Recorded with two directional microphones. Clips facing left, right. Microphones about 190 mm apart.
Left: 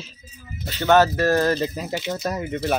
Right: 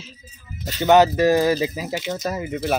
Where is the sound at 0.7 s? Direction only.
15° right (ahead or behind).